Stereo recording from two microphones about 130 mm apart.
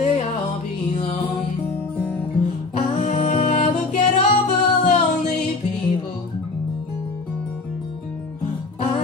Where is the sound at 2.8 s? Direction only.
65° left (ahead or behind).